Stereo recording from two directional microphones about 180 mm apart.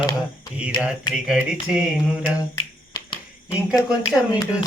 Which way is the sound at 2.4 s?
20° left (ahead or behind).